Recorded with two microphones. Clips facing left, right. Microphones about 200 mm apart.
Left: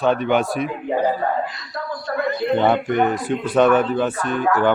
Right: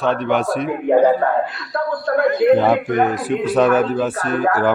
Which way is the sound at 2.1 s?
55° right (ahead or behind).